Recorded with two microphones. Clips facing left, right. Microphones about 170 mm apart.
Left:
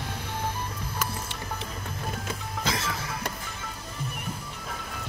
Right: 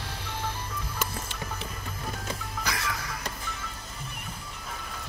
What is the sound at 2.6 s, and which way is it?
Music, 25° left (ahead or behind).